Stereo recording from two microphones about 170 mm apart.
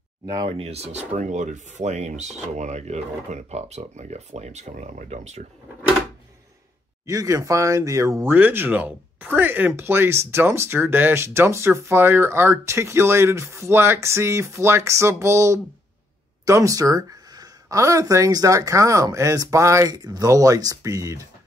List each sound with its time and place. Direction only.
0.5 s speech: 35° right (ahead or behind)
7.1 s speech: 20° right (ahead or behind)